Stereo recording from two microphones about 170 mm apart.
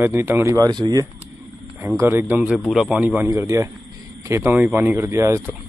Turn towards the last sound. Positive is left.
turn(degrees=-15)  # may be behind; listen again after turning